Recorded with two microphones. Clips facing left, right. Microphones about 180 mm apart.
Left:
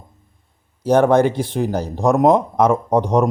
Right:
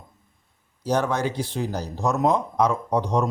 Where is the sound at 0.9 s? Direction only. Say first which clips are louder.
Left 10 dB; 55° left (ahead or behind).